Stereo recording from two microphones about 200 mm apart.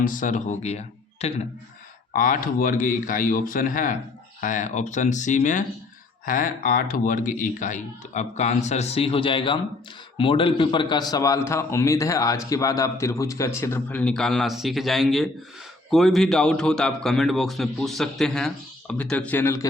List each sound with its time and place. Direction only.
0.0 s a man's voice: 40° left (ahead or behind); by 19.6 s 10° left (ahead or behind)